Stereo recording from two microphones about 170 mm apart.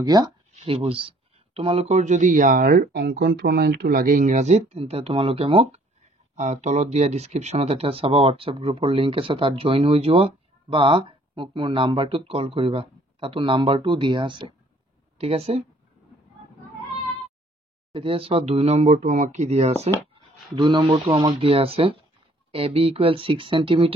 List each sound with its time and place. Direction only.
0.0 s speech: 25° right (ahead or behind)
17.9 s speech: 30° right (ahead or behind)
20.5 s speech: 30° right (ahead or behind)